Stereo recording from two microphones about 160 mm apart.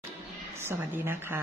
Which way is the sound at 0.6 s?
15° right (ahead or behind).